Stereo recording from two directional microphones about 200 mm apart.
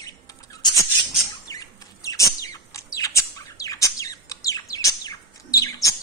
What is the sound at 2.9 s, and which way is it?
Chirp, 15° left (ahead or behind).